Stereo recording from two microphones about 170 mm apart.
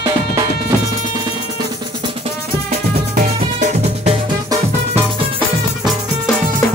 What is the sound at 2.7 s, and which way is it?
Music, 45° right (ahead or behind).